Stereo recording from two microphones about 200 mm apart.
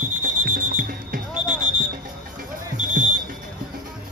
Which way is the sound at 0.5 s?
45° right (ahead or behind).